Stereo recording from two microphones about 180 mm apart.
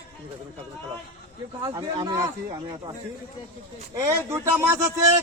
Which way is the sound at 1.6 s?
20° right (ahead or behind).